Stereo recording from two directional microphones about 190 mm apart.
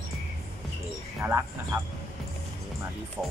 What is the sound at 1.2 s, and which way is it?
Speech, 10° right (ahead or behind).